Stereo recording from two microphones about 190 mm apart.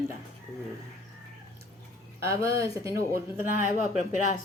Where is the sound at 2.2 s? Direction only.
15° right (ahead or behind).